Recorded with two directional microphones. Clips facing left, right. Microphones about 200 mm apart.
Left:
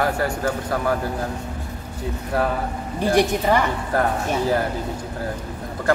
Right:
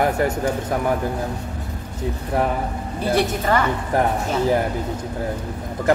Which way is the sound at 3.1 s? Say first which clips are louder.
Left 2 dB; 15° left (ahead or behind).